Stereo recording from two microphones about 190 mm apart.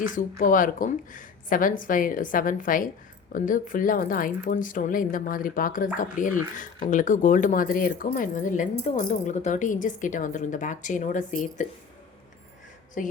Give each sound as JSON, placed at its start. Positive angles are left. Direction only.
{"t": 0.0, "sound": "speech", "side_deg": 45}
{"t": 13.0, "sound": "speech", "side_deg": 40}